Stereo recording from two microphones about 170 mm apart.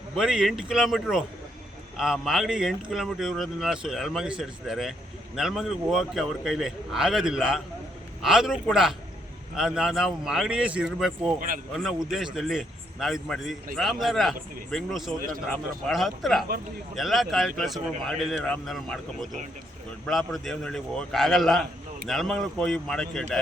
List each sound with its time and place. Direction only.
0.2 s speech: 5° right (ahead or behind)
11.3 s speech: 55° right (ahead or behind)
11.8 s speech: centre (ahead or behind)